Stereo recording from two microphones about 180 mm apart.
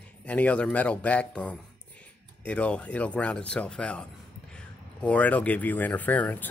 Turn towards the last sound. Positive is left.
turn(degrees=10)  # may be behind; listen again after turning